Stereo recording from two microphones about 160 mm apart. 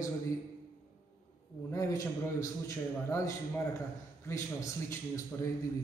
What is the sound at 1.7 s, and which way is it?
A man's voice, 20° left (ahead or behind).